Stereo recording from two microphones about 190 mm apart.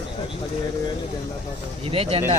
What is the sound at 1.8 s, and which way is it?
Speech, 30° right (ahead or behind).